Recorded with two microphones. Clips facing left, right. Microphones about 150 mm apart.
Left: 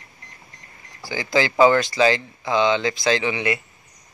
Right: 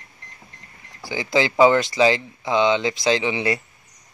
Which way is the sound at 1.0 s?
25° right (ahead or behind).